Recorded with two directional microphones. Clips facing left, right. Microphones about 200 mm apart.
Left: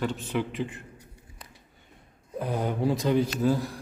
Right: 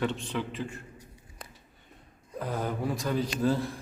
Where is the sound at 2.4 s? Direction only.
20° left (ahead or behind).